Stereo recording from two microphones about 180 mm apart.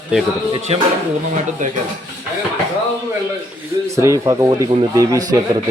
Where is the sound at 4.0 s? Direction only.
15° right (ahead or behind).